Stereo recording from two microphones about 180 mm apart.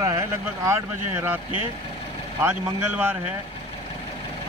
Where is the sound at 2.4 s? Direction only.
10° right (ahead or behind).